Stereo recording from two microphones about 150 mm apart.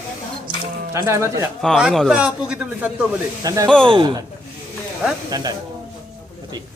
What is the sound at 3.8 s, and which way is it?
Speech, 30° right (ahead or behind).